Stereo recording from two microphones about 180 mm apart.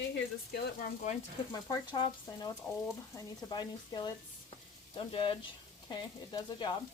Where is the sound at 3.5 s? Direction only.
20° left (ahead or behind).